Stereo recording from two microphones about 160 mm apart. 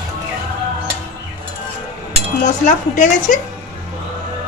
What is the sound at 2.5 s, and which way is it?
Speech, 50° left (ahead or behind).